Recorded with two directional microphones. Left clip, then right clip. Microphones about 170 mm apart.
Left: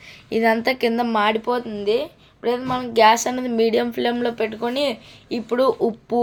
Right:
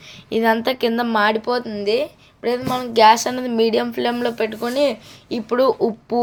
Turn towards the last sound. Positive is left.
turn(degrees=-10)  # may be behind; listen again after turning